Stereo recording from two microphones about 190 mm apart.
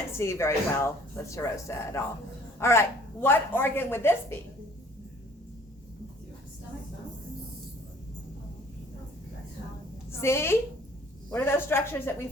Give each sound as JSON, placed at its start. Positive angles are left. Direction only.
{"t": 0.1, "sound": "a woman's voice", "side_deg": 15}
{"t": 10.1, "sound": "a woman's voice", "side_deg": 15}